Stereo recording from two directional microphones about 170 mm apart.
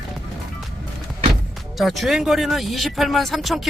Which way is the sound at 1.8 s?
Centre (ahead or behind).